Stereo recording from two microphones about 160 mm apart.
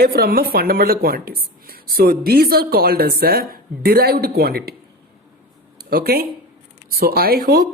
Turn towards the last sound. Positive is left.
turn(degrees=-75)  # may be behind; listen again after turning